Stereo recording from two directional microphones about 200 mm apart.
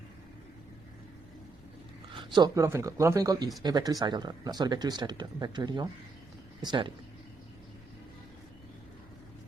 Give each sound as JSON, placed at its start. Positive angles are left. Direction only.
{"t": 2.3, "sound": "speech", "side_deg": -20}